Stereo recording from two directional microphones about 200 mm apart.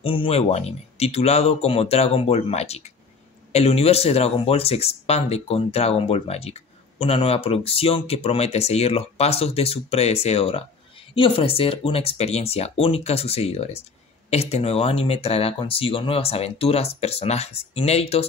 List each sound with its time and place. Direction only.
0.0 s speech: 25° left (ahead or behind)